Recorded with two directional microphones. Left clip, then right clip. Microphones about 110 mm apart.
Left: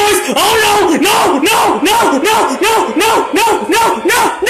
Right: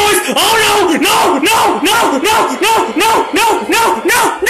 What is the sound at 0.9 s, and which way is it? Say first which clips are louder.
Battle cry: even; 20° left (ahead or behind).